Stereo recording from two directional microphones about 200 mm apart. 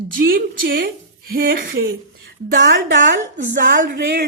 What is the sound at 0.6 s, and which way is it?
A woman's voice, 50° right (ahead or behind).